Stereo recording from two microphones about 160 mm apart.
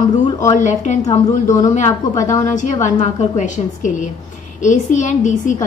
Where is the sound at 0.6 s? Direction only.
50° left (ahead or behind).